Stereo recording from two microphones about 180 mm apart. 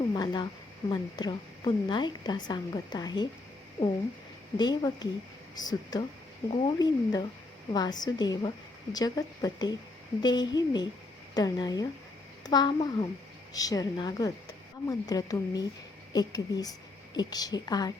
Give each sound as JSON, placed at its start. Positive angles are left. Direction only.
{"t": 0.1, "sound": "a sound", "side_deg": 25}
{"t": 0.9, "sound": "a woman's voice", "side_deg": 25}
{"t": 4.5, "sound": "a woman's voice", "side_deg": 25}